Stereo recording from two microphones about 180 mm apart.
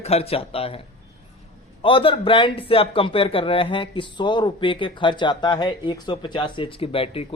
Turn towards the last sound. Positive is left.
turn(degrees=30)  # may be behind; listen again after turning